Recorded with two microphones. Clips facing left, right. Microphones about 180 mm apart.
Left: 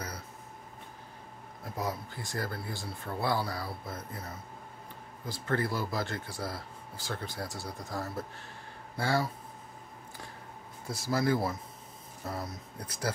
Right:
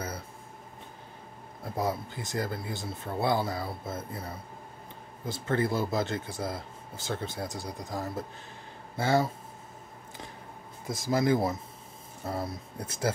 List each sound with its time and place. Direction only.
1.6 s speech: 25° right (ahead or behind)
10.9 s speech: 20° right (ahead or behind)